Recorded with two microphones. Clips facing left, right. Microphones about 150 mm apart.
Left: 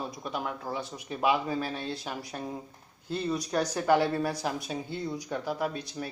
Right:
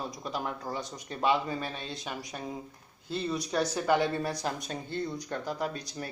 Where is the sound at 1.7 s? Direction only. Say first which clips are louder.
Left 4 dB; 20° right (ahead or behind).